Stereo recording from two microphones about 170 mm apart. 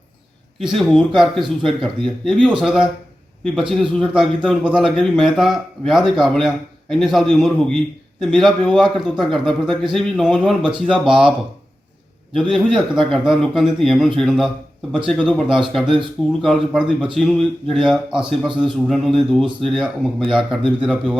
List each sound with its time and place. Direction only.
0.6 s speech: centre (ahead or behind)
12.3 s speech: 5° left (ahead or behind)